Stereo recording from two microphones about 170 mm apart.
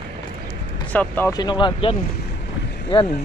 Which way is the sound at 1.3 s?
25° left (ahead or behind).